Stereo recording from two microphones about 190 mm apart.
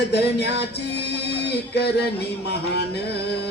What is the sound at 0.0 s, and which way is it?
Music, 60° left (ahead or behind).